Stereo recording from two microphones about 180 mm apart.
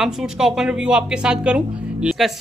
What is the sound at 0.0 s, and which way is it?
Speech, centre (ahead or behind).